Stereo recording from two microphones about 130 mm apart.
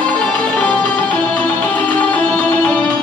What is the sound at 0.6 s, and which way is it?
Music, 10° left (ahead or behind).